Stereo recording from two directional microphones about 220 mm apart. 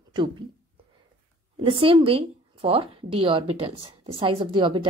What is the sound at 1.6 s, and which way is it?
A woman's voice, 25° right (ahead or behind).